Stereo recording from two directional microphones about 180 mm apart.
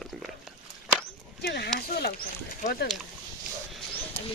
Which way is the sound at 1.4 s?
65° left (ahead or behind).